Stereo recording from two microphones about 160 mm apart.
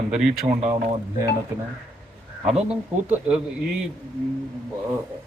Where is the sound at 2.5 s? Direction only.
5° right (ahead or behind).